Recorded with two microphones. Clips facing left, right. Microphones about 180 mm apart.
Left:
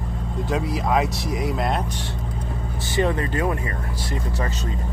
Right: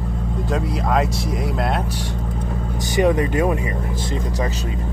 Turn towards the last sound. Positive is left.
turn(degrees=-20)  # may be behind; listen again after turning